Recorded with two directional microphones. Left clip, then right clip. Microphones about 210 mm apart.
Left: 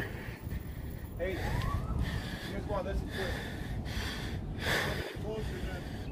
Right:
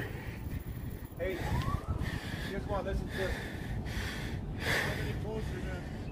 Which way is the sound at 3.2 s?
Centre (ahead or behind).